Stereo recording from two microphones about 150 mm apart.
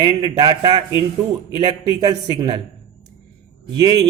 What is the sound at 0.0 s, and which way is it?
A man's voice, 30° right (ahead or behind).